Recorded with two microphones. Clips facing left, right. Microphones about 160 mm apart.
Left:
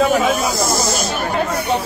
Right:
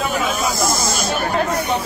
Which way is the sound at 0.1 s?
50° left (ahead or behind).